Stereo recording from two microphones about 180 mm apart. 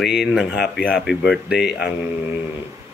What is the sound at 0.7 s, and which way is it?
Speech, 5° right (ahead or behind).